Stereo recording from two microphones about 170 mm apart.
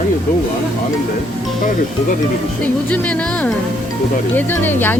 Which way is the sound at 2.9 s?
10° left (ahead or behind).